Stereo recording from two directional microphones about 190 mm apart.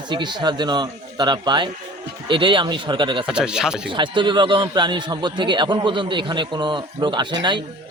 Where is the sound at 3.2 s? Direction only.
5° right (ahead or behind).